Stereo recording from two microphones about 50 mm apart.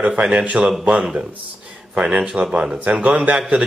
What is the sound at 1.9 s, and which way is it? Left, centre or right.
Speech, right.